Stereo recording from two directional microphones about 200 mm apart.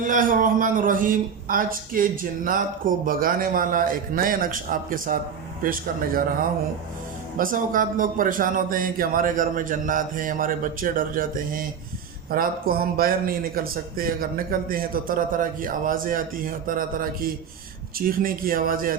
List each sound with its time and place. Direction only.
0.0 s speech: 40° right (ahead or behind)